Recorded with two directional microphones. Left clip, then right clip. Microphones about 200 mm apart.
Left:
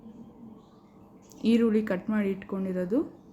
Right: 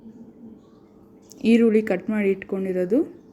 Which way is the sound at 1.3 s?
15° right (ahead or behind).